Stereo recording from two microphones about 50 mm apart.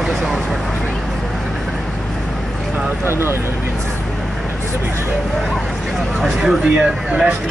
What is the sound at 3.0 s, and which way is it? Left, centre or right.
Speech, right.